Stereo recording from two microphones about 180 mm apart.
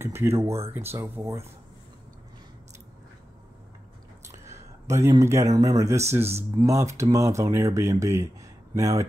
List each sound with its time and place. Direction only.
0.0 s speech: 15° right (ahead or behind)
4.5 s speech: 15° right (ahead or behind)